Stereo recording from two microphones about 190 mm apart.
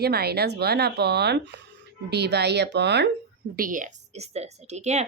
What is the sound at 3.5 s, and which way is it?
Speech, 45° right (ahead or behind).